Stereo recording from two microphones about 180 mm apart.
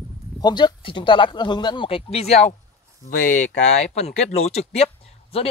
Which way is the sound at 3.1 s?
45° left (ahead or behind).